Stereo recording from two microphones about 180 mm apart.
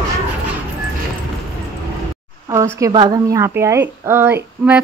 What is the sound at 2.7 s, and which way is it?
Speech, 20° right (ahead or behind).